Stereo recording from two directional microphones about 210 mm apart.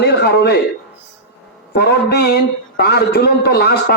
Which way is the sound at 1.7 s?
50° left (ahead or behind).